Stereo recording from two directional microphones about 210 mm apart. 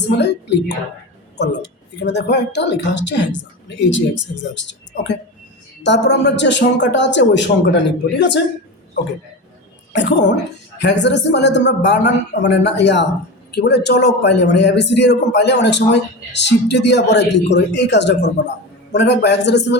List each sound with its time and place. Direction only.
0.0 s a man's voice: 55° left (ahead or behind)
9.9 s a man's voice: 55° left (ahead or behind)